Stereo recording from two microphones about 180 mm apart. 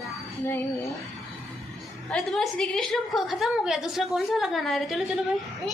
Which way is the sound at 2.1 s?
5° left (ahead or behind).